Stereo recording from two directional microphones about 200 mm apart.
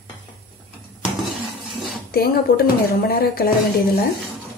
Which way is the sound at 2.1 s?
50° left (ahead or behind).